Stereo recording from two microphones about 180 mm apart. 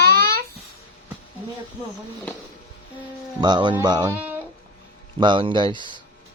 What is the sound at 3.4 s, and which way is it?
Speech, 25° right (ahead or behind).